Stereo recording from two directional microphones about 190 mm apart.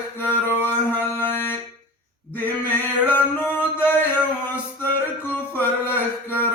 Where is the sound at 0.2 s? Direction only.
10° left (ahead or behind).